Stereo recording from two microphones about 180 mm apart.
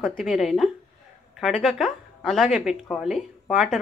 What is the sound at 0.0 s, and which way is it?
Speech, centre (ahead or behind).